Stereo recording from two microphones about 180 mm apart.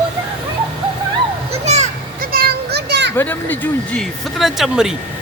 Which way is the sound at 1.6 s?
40° right (ahead or behind).